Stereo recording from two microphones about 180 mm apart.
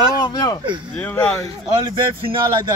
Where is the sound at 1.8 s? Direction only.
25° right (ahead or behind).